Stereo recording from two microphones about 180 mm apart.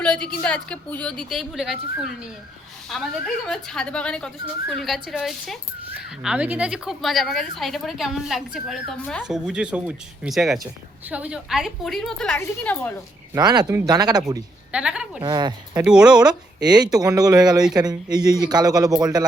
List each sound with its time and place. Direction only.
0.0 s a sound: 5° left (ahead or behind)
0.4 s speech: 5° left (ahead or behind)
13.3 s speech: 25° right (ahead or behind)
14.7 s speech: 5° right (ahead or behind)
15.2 s speech: 25° right (ahead or behind)
15.7 s speech: 5° right (ahead or behind)
16.6 s speech: 20° right (ahead or behind)